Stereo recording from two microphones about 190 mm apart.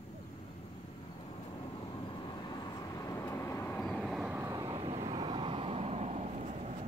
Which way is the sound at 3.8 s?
Centre (ahead or behind).